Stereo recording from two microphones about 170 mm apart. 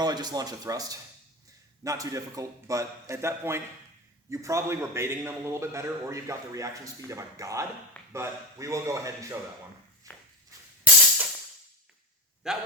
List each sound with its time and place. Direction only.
0.0 s a man's voice: 25° right (ahead or behind)
12.4 s speech: 5° right (ahead or behind)